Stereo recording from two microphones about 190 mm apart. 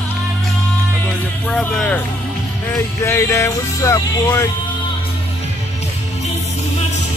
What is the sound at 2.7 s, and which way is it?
Speech, 15° left (ahead or behind).